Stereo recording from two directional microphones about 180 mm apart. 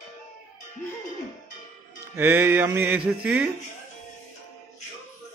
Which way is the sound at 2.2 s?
15° right (ahead or behind).